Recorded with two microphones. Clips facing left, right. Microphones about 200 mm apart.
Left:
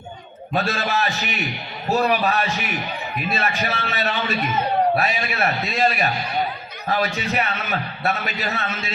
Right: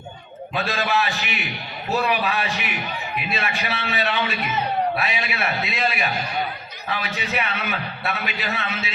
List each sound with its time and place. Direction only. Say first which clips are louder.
0.5 s a man's voice: left 1 dB; 40° left (ahead or behind)